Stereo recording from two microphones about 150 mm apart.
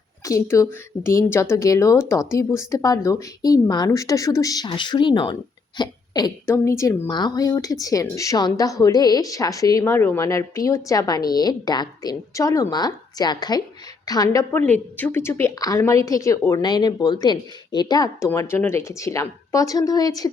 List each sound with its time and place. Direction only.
0.3 s speech: 20° left (ahead or behind)
6.4 s speech: 15° left (ahead or behind)